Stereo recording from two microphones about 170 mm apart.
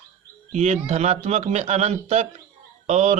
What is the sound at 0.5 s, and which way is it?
A man's voice, 40° right (ahead or behind).